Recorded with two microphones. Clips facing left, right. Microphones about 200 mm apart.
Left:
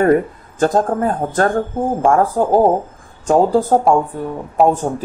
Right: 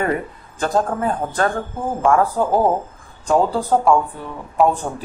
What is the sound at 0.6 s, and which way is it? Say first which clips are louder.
Speech: left 5 dB; 45° left (ahead or behind).